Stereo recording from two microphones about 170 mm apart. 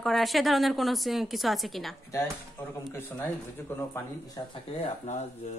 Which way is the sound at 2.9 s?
10° left (ahead or behind).